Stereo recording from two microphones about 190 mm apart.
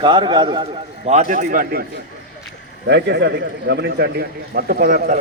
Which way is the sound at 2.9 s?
60° right (ahead or behind).